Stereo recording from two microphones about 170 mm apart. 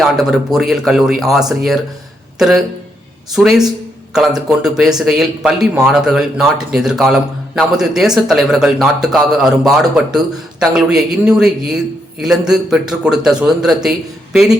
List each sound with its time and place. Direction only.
0.0 s speech: centre (ahead or behind)